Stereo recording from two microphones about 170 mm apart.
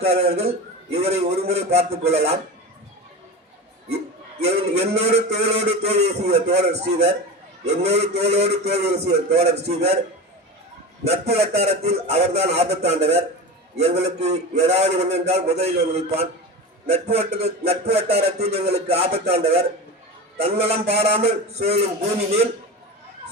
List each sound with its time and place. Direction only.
0.1 s a man's voice: 35° right (ahead or behind)
4.4 s a man's voice: 40° right (ahead or behind)
11.0 s a man's voice: 40° right (ahead or behind)